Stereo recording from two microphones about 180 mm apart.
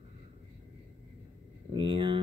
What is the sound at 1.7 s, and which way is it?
Speech, 25° right (ahead or behind).